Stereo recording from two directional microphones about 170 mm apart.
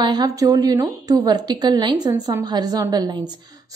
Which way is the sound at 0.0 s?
25° right (ahead or behind).